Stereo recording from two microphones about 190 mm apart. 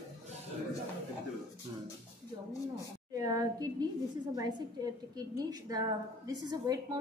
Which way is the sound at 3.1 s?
15° right (ahead or behind).